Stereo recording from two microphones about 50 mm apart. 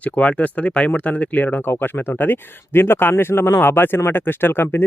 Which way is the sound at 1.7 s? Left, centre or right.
Left.